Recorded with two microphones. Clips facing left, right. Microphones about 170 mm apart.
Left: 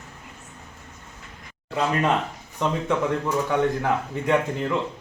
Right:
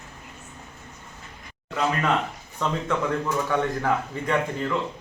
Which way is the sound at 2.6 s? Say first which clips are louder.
Left 2 dB; 20° left (ahead or behind).